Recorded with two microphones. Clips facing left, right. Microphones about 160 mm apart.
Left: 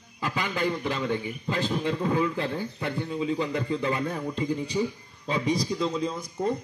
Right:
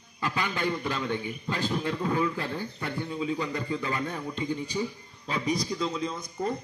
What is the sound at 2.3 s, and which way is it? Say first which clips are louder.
Speech: left 3 dB; 20° left (ahead or behind).